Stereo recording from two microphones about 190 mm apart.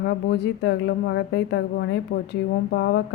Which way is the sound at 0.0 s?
65° left (ahead or behind).